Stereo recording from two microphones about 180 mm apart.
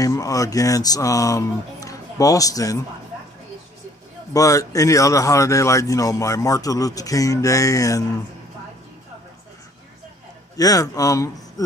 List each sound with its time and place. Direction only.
0.0 s a man's voice: 20° left (ahead or behind)
4.3 s a man's voice: 20° left (ahead or behind)
10.6 s a man's voice: 20° left (ahead or behind)